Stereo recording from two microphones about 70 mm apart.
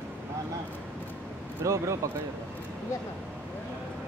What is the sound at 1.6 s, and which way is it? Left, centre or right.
Speech, right.